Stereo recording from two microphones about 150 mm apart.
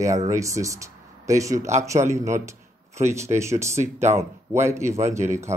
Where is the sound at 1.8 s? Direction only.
20° right (ahead or behind).